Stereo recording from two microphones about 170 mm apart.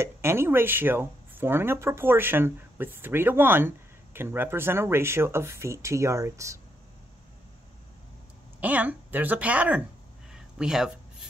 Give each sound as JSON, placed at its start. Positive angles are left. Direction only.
{"t": 0.0, "sound": "speech", "side_deg": -15}
{"t": 8.5, "sound": "speech", "side_deg": -10}
{"t": 10.3, "sound": "a sound", "side_deg": -5}